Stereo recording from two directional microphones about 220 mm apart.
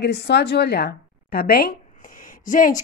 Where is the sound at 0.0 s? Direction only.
50° left (ahead or behind).